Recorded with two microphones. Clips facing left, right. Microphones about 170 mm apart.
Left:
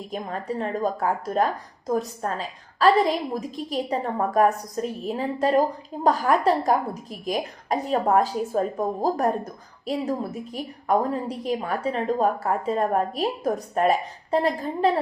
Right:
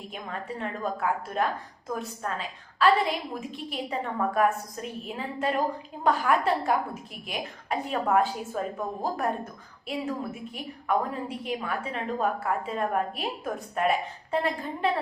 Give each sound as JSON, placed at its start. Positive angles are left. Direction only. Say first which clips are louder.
{"t": 0.1, "sound": "a woman's voice", "louder": "left 7 dB", "side_deg": 40}